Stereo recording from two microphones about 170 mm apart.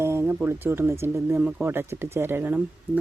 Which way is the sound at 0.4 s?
15° right (ahead or behind).